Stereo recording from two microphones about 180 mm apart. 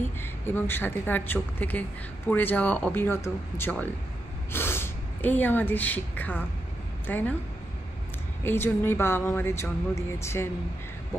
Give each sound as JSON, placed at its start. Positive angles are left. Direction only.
{"t": 0.2, "sound": "a woman's voice", "side_deg": 10}
{"t": 8.5, "sound": "a woman's voice", "side_deg": 10}